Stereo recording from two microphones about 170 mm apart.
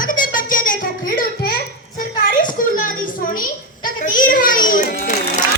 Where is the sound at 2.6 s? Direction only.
50° left (ahead or behind).